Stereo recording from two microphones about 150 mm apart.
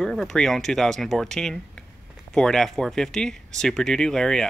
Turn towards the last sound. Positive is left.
turn(degrees=5)  # may be behind; listen again after turning